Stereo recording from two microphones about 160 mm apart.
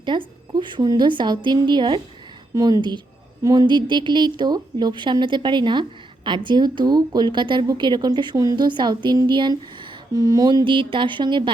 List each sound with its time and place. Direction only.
0.1 s speech: 30° right (ahead or behind)